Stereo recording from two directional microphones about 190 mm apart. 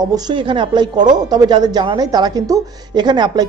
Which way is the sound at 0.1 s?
25° right (ahead or behind).